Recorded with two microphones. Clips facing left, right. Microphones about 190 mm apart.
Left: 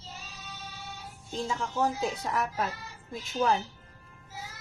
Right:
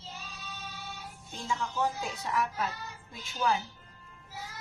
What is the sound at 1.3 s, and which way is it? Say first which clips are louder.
Speech: left 3 dB; 35° left (ahead or behind).